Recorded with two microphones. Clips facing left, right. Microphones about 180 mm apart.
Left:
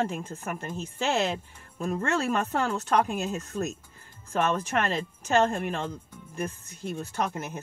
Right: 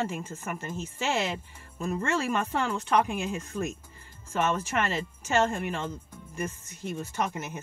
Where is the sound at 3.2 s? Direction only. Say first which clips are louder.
Left 1 dB; 10° right (ahead or behind).